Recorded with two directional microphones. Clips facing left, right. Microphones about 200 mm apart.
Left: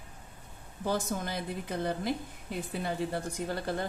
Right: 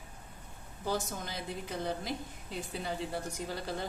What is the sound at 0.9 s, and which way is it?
A woman's voice, 55° left (ahead or behind).